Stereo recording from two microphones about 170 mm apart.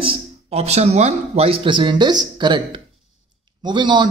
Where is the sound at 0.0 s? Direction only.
35° right (ahead or behind).